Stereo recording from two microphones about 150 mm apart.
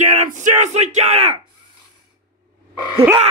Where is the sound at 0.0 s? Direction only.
55° right (ahead or behind).